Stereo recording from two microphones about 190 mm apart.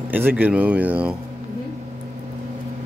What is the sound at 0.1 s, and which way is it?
Speech, 10° right (ahead or behind).